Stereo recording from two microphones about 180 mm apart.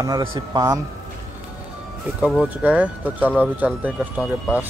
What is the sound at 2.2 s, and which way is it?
Speech, 5° right (ahead or behind).